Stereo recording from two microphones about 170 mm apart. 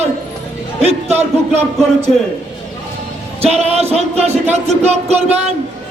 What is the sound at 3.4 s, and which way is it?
Speech, 40° right (ahead or behind).